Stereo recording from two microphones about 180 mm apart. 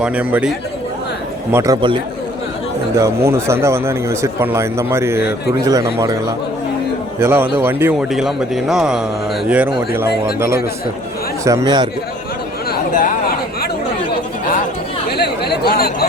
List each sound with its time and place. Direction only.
0.0 s speech: 10° right (ahead or behind)
1.5 s a man's voice: 20° right (ahead or behind)
7.2 s speech: 10° right (ahead or behind)
11.4 s a man's voice: 20° right (ahead or behind)
12.7 s a sound: 45° left (ahead or behind)
15.1 s chatter: 65° left (ahead or behind)